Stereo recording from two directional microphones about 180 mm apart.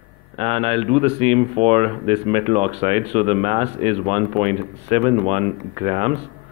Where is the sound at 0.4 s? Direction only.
35° right (ahead or behind).